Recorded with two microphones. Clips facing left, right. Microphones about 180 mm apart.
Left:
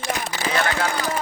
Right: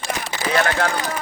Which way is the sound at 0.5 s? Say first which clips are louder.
Right 4 dB; 60° right (ahead or behind).